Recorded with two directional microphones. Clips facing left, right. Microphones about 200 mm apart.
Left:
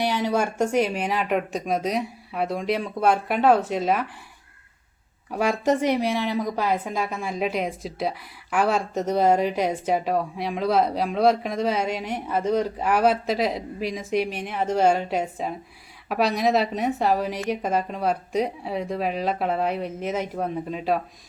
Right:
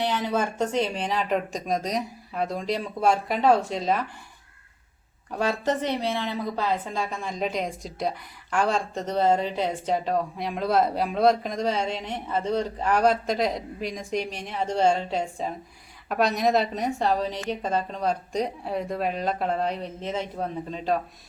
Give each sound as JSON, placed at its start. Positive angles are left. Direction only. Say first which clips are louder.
{"t": 0.0, "sound": "a woman's voice", "louder": "left 2 dB", "side_deg": 10}
{"t": 5.4, "sound": "a woman's voice", "louder": "left 4 dB", "side_deg": 10}